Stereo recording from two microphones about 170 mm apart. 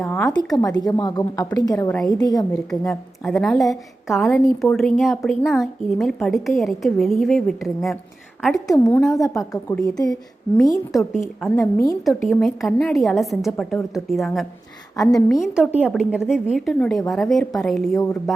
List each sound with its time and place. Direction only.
0.0 s a woman's voice: 15° left (ahead or behind)
2.5 s a woman's voice: 5° left (ahead or behind)
8.6 s a woman's voice: 20° left (ahead or behind)
11.5 s a woman's voice: 20° left (ahead or behind)
12.0 s a woman's voice: centre (ahead or behind)
14.9 s a woman's voice: 20° left (ahead or behind)
15.4 s a woman's voice: 5° right (ahead or behind)